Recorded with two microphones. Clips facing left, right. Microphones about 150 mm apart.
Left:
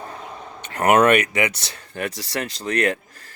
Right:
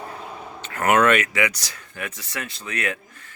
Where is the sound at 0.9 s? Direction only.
20° left (ahead or behind); by 3.3 s 35° left (ahead or behind).